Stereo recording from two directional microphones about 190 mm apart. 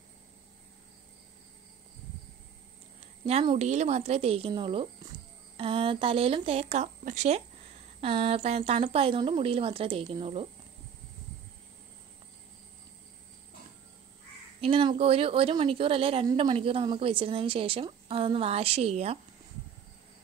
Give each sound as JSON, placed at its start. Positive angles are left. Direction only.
{"t": 3.0, "sound": "a woman's voice", "side_deg": -35}
{"t": 14.6, "sound": "a woman's voice", "side_deg": -30}